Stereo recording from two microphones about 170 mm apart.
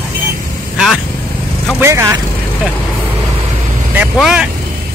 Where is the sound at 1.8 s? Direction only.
15° right (ahead or behind).